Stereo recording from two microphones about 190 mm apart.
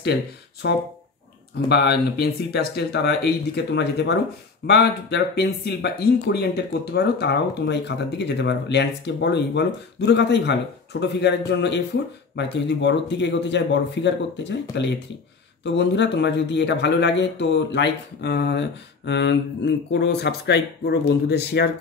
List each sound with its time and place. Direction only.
0.0 s speech: 60° left (ahead or behind)